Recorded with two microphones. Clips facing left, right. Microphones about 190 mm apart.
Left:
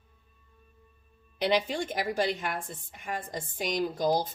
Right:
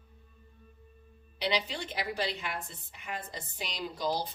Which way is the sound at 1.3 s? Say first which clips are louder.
Left 6 dB; 50° left (ahead or behind).